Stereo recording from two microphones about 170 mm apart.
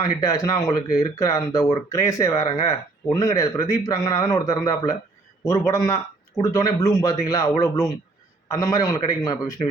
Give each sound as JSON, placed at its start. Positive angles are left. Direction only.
{"t": 0.0, "sound": "a man's voice", "side_deg": 20}